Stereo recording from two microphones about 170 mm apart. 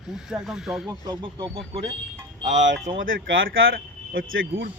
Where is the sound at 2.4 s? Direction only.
40° right (ahead or behind).